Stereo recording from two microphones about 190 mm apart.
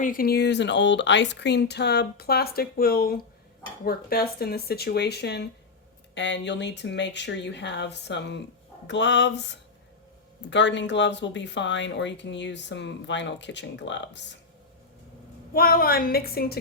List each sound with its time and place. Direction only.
0.0 s speech: 50° left (ahead or behind); by 14.3 s 70° left (ahead or behind)
15.5 s a woman's voice: 50° left (ahead or behind)